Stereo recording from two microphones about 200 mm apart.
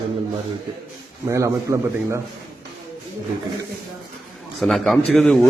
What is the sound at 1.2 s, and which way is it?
Speech, 15° right (ahead or behind).